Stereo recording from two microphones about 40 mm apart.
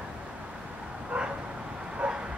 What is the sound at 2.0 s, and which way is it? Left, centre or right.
Bow-wow, right.